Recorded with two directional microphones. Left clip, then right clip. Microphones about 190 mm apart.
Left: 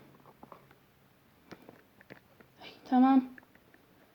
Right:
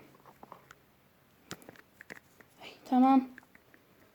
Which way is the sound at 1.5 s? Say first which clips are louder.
Right 3 dB; 35° right (ahead or behind).